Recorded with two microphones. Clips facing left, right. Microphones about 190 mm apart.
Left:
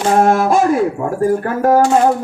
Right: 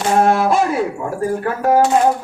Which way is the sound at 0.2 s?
45° left (ahead or behind).